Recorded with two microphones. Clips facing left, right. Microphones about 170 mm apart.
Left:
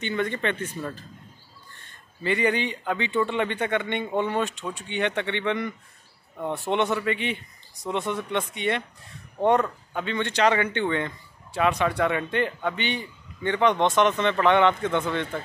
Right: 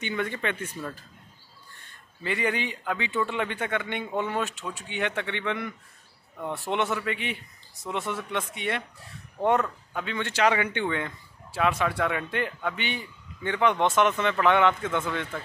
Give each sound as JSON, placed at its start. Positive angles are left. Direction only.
{"t": 0.0, "sound": "speech", "side_deg": -10}
{"t": 0.7, "sound": "a man's voice", "side_deg": 5}
{"t": 2.2, "sound": "a man's voice", "side_deg": 0}
{"t": 9.9, "sound": "a man's voice", "side_deg": -5}